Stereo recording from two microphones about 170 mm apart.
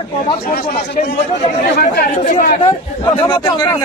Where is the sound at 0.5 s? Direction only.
65° left (ahead or behind).